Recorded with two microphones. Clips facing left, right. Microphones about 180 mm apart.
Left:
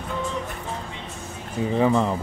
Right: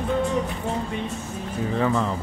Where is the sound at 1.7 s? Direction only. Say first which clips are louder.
Left 3 dB; 20° left (ahead or behind).